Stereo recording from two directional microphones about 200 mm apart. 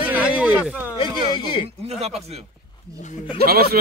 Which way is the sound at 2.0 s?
30° right (ahead or behind).